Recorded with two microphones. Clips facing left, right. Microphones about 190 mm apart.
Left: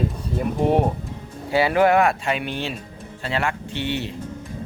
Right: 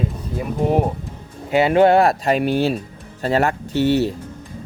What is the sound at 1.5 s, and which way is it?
Speech, 20° right (ahead or behind).